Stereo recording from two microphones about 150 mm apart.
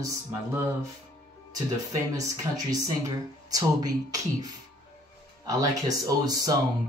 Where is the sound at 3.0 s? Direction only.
25° right (ahead or behind).